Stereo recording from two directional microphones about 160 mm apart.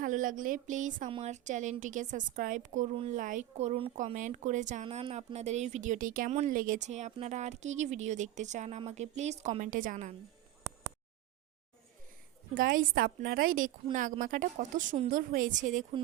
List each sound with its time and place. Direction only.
0.0 s a woman's voice: 55° right (ahead or behind)
12.5 s a woman's voice: 65° right (ahead or behind)